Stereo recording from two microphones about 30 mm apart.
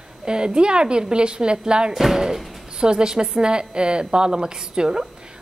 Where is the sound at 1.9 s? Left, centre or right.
Centre.